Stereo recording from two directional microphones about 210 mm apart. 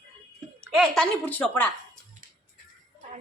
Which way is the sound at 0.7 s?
5° left (ahead or behind).